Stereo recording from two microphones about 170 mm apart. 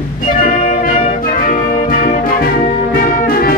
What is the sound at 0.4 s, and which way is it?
Music, 50° left (ahead or behind).